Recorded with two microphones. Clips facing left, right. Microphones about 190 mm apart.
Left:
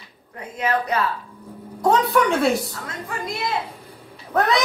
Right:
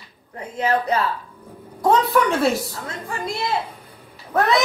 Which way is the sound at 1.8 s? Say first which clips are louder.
Right 1 dB; centre (ahead or behind).